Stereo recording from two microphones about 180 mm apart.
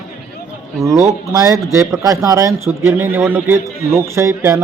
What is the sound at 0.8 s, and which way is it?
A man's voice, 15° right (ahead or behind).